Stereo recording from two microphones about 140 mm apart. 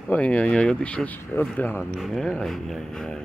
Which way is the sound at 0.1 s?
10° left (ahead or behind).